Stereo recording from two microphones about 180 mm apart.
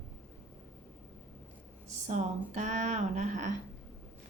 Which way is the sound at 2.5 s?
40° right (ahead or behind).